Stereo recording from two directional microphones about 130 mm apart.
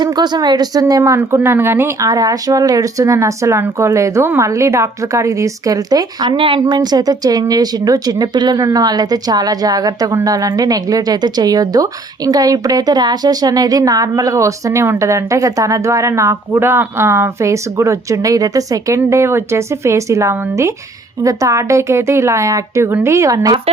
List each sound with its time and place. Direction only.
0.0 s a woman's voice: 35° right (ahead or behind)